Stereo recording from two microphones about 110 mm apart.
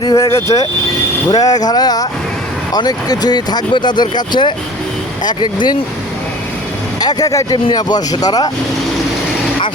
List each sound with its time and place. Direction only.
0.2 s speech: 25° left (ahead or behind); by 5.7 s 40° left (ahead or behind)
7.0 s speech: 35° left (ahead or behind)